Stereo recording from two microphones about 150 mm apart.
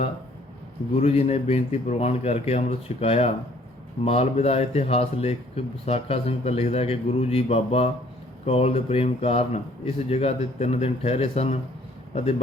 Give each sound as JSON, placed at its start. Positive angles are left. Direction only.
{"t": 0.9, "sound": "speech", "side_deg": 45}